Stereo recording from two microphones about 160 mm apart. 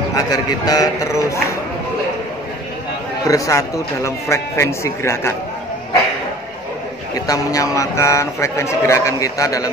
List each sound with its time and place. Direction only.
0.1 s a man's voice: 20° left (ahead or behind)
3.3 s speech: 20° left (ahead or behind)
7.2 s a man's voice: 20° left (ahead or behind)